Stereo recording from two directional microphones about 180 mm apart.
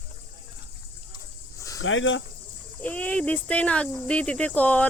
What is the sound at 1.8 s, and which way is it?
Speech, 90° left.